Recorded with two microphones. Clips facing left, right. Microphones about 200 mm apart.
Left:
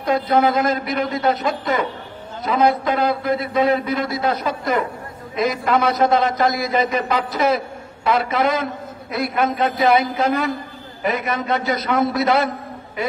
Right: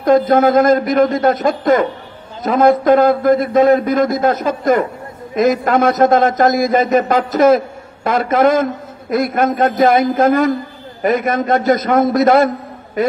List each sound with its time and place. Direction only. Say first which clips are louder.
0.0 s a man's voice: right 6 dB; 45° right (ahead or behind)